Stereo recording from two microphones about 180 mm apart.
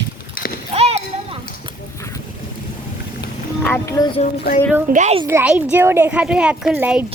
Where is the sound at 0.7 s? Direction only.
35° right (ahead or behind).